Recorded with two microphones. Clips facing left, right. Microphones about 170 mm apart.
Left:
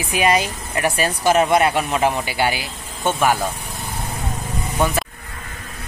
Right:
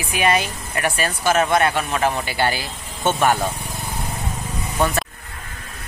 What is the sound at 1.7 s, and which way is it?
Speech, 10° left (ahead or behind).